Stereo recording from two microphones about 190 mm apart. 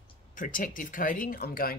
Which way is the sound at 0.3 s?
45° left (ahead or behind).